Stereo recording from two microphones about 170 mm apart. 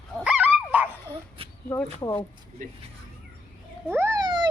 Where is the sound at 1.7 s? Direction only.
20° left (ahead or behind).